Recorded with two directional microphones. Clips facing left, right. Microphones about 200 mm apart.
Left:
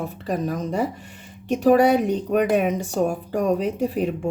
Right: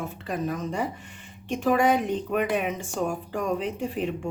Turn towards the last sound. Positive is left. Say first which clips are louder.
# left 6 dB
turn(degrees=40)  # may be behind; listen again after turning